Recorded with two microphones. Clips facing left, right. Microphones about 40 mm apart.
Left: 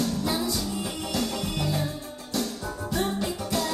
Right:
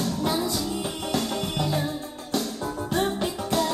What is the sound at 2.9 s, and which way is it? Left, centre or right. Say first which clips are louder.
Music: right 1 dB; right.